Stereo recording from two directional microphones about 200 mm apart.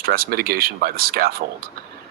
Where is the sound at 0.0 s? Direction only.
50° right (ahead or behind).